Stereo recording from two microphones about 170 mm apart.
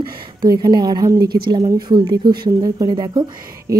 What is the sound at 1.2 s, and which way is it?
Music, 65° right (ahead or behind).